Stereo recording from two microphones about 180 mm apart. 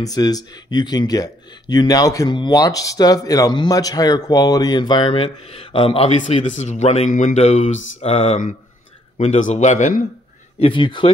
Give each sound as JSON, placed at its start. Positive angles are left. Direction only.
{"t": 0.0, "sound": "speech", "side_deg": 20}
{"t": 10.6, "sound": "speech", "side_deg": 25}